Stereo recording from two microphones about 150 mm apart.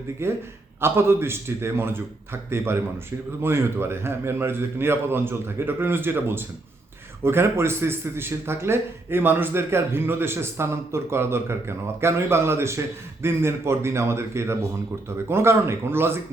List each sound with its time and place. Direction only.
0.2 s speech: 15° right (ahead or behind)